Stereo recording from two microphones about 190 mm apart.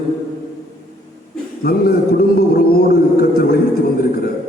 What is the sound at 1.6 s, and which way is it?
A man's voice, 55° left (ahead or behind).